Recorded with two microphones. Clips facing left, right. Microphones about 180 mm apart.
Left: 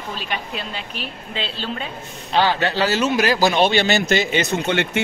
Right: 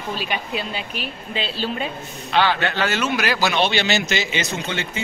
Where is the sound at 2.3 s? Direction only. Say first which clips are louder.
Left 1 dB; 35° left (ahead or behind).